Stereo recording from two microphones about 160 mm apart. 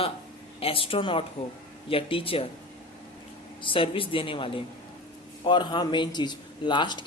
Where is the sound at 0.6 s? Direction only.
35° left (ahead or behind).